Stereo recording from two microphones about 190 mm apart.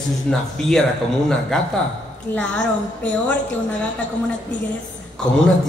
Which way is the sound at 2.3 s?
5° left (ahead or behind).